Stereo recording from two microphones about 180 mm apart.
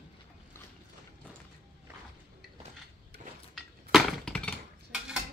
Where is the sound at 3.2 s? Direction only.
45° right (ahead or behind).